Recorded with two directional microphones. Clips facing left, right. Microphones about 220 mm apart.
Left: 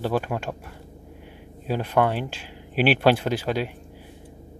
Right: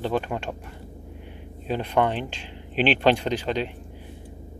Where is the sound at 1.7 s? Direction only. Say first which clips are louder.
Left 1 dB; 5° left (ahead or behind).